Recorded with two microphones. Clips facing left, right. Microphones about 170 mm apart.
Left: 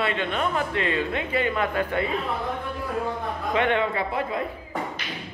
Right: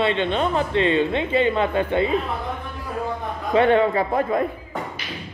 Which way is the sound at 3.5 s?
35° right (ahead or behind).